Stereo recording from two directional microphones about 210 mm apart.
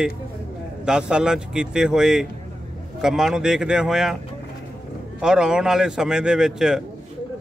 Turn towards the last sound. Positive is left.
turn(degrees=-5)  # may be behind; listen again after turning